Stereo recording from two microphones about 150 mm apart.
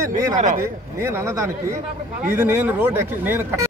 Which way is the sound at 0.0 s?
20° right (ahead or behind).